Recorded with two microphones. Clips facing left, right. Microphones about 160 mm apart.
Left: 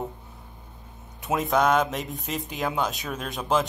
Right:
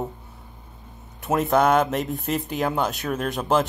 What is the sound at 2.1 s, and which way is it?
Speech, 55° right (ahead or behind).